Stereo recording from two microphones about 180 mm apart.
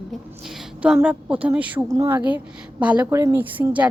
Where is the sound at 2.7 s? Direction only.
10° right (ahead or behind).